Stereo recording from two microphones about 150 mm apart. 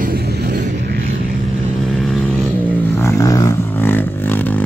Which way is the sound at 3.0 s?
20° left (ahead or behind).